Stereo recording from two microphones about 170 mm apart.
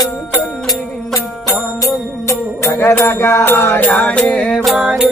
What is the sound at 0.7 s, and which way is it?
Music, 20° left (ahead or behind).